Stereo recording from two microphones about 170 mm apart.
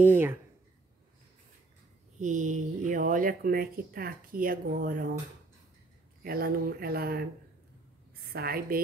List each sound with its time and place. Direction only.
0.0 s speech: 15° right (ahead or behind)
2.1 s speech: 45° right (ahead or behind)
6.2 s speech: 60° right (ahead or behind)
8.3 s speech: 65° right (ahead or behind)